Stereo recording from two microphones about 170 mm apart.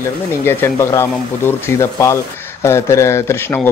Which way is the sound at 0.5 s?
15° left (ahead or behind).